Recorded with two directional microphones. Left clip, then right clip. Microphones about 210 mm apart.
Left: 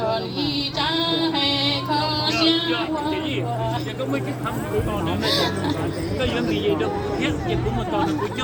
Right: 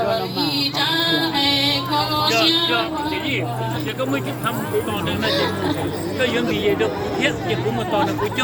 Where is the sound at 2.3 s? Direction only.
40° right (ahead or behind).